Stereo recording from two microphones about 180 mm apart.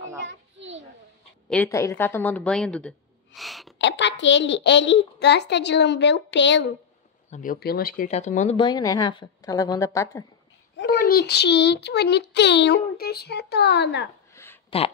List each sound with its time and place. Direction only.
0.2 s children playing: 90° right
1.5 s a woman's voice: 10° left (ahead or behind)
3.3 s sneeze: centre (ahead or behind)
3.7 s a child's voice: 80° left
7.2 s speech: 45° left (ahead or behind)
7.6 s speech: 55° left (ahead or behind)
8.5 s a woman's voice: 25° left (ahead or behind)
10.8 s a child's voice: 60° left (ahead or behind)
14.3 s a sound: 15° left (ahead or behind)